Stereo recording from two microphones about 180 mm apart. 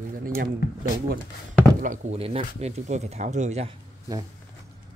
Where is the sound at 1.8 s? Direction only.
40° right (ahead or behind).